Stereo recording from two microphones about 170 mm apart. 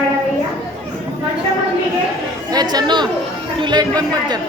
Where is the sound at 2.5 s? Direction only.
25° right (ahead or behind).